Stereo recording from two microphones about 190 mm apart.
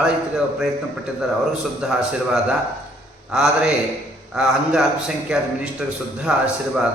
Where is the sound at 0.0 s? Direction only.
5° right (ahead or behind).